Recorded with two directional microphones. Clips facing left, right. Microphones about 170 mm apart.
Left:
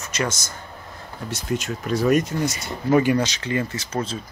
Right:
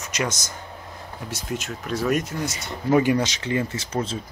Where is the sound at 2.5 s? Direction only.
20° right (ahead or behind).